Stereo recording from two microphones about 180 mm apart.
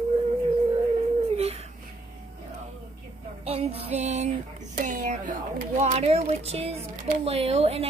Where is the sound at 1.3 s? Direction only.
35° right (ahead or behind).